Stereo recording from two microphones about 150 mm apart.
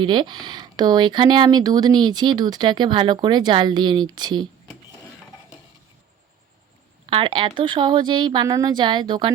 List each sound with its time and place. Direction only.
0.0 s speech: 30° right (ahead or behind)
7.1 s speech: 35° right (ahead or behind)